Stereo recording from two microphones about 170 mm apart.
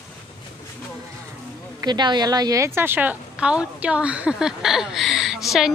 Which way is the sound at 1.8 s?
25° right (ahead or behind).